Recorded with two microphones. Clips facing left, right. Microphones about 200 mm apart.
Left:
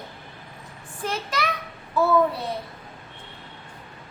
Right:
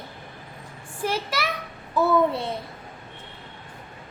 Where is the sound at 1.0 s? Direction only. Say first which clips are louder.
Right 1 dB; 10° right (ahead or behind).